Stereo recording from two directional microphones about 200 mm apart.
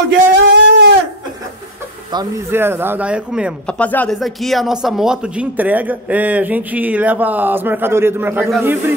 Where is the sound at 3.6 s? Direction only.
5° left (ahead or behind).